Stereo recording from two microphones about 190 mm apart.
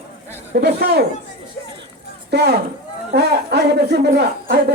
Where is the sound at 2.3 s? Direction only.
60° right (ahead or behind).